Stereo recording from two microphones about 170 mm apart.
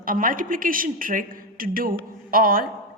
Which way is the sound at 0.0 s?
55° right (ahead or behind).